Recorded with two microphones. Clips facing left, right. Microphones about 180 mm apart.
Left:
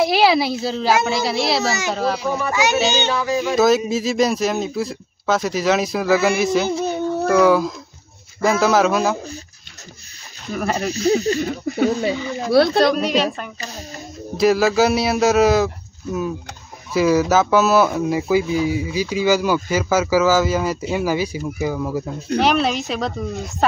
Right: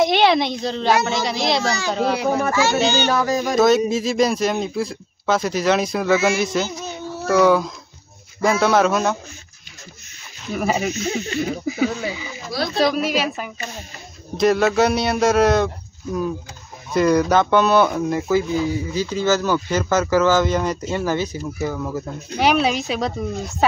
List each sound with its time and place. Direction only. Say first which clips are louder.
0.0 s speech: even; 5° left (ahead or behind)
2.1 s speech: right 3 dB; 65° right (ahead or behind)
2.5 s speech: even; 15° left (ahead or behind)
3.1 s music: right 1 dB; 40° right (ahead or behind)
3.5 s speech: right 1 dB; centre (ahead or behind)
10.5 s speech: right 1 dB; 5° right (ahead or behind)
10.9 s speech: left 7 dB; 35° left (ahead or behind)
11.6 s speech: left 3 dB; centre (ahead or behind)
22.4 s speech: right 1 dB; centre (ahead or behind)